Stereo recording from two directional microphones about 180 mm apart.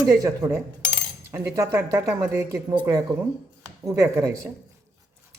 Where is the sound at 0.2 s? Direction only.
15° right (ahead or behind).